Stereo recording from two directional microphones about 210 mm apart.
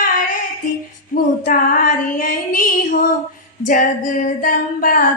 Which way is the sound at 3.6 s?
40° left (ahead or behind).